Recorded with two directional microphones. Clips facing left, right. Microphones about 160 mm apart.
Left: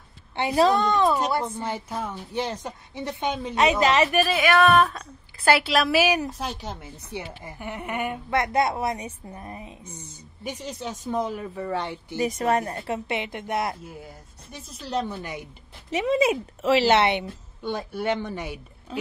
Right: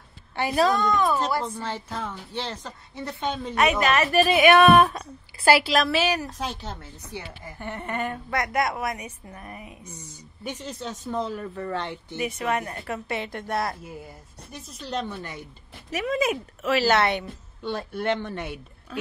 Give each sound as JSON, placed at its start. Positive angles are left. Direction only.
{"t": 0.4, "sound": "a woman's voice", "side_deg": 25}
{"t": 1.1, "sound": "a woman's voice", "side_deg": 20}
{"t": 4.3, "sound": "speech", "side_deg": -15}
{"t": 5.4, "sound": "a woman's voice", "side_deg": 0}
{"t": 8.3, "sound": "a woman's voice", "side_deg": 25}
{"t": 10.4, "sound": "a woman's voice", "side_deg": 10}
{"t": 12.2, "sound": "a woman's voice", "side_deg": 40}
{"t": 14.0, "sound": "a woman's voice", "side_deg": 0}
{"t": 15.9, "sound": "a woman's voice", "side_deg": 25}
{"t": 17.6, "sound": "a woman's voice", "side_deg": 10}
{"t": 18.9, "sound": "speech", "side_deg": 25}